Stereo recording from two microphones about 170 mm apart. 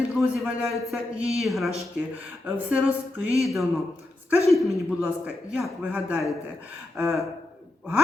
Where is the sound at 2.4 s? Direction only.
10° right (ahead or behind).